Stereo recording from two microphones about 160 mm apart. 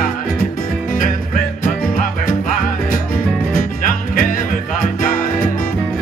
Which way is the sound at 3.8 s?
55° left (ahead or behind).